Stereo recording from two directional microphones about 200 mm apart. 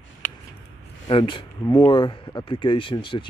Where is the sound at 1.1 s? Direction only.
25° left (ahead or behind).